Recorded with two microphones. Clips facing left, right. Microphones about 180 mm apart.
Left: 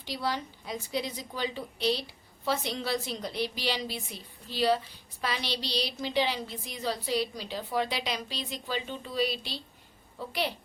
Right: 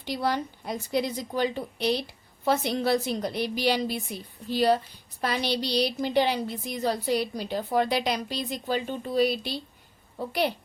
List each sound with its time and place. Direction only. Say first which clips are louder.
0.0 s a woman's voice: right 5 dB; 55° right (ahead or behind)